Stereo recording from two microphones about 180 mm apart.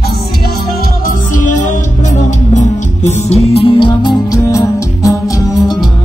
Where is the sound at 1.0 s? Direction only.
45° left (ahead or behind); by 5.9 s 15° left (ahead or behind).